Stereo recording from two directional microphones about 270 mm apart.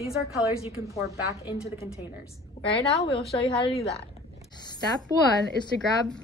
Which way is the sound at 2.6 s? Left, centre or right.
Centre.